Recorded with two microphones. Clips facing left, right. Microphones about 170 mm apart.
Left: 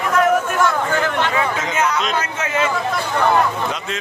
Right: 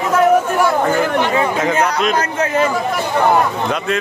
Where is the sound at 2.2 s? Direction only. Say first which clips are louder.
Right 5 dB; 35° right (ahead or behind).